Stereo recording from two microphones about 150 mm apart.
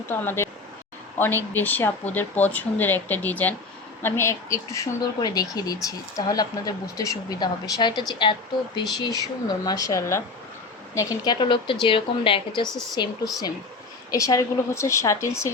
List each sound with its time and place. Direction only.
0.1 s speech: 15° left (ahead or behind)
1.5 s a woman's voice: 10° left (ahead or behind); by 12.6 s 35° left (ahead or behind)
12.6 s speech: 5° left (ahead or behind)
14.1 s speech: 20° left (ahead or behind)